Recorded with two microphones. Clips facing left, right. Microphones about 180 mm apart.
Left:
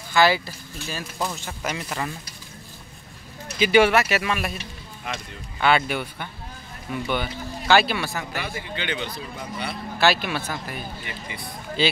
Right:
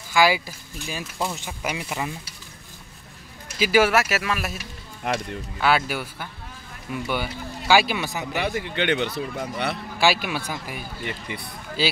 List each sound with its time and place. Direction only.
0.1 s speech: 10° right (ahead or behind)
3.5 s speech: 5° right (ahead or behind)
5.6 s speech: 5° right (ahead or behind)
8.4 s speech: 65° right (ahead or behind)
9.9 s speech: 10° right (ahead or behind)
11.1 s speech: 60° right (ahead or behind)
11.8 s speech: 5° right (ahead or behind)